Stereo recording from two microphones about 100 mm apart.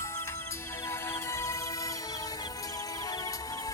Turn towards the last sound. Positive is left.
turn(degrees=35)  # may be behind; listen again after turning